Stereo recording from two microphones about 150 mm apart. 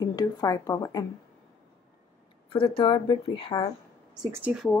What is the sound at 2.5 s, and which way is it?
Speech, 35° left (ahead or behind).